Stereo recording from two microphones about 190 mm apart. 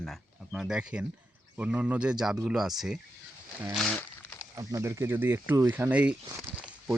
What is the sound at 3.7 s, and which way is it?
Speech, 5° left (ahead or behind).